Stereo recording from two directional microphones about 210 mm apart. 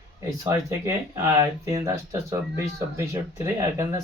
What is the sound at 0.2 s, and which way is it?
Speech, 15° right (ahead or behind).